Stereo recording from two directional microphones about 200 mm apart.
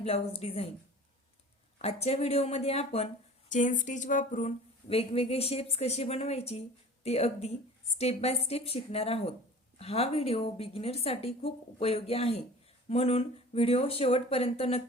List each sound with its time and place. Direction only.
0.0 s a woman's voice: 30° left (ahead or behind)
1.8 s a woman's voice: 30° left (ahead or behind)